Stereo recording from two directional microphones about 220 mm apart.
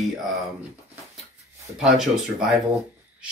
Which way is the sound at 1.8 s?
Centre (ahead or behind).